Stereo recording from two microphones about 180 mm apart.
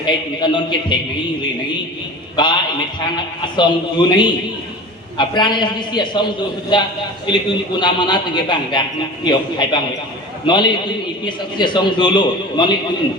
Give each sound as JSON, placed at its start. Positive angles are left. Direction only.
{"t": 0.3, "sound": "a man's voice", "side_deg": 25}
{"t": 2.3, "sound": "a man's voice", "side_deg": 25}